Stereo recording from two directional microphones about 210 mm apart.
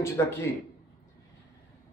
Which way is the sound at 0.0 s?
15° left (ahead or behind).